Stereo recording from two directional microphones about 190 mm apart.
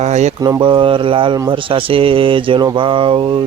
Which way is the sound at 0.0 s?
35° right (ahead or behind).